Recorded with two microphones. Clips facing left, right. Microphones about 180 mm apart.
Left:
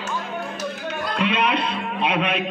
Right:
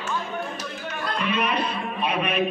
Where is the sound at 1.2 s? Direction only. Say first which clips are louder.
Left 3 dB; 80° left.